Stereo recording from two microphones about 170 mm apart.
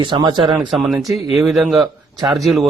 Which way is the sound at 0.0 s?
25° right (ahead or behind).